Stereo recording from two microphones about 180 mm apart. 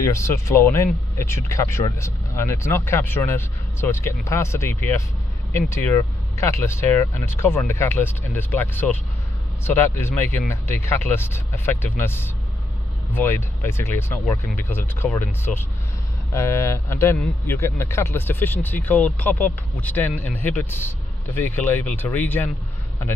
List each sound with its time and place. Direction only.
0.0 s a man's voice: 15° left (ahead or behind)